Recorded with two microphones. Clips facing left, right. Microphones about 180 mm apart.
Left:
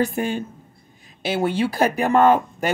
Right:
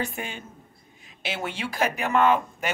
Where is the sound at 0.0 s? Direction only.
40° left (ahead or behind).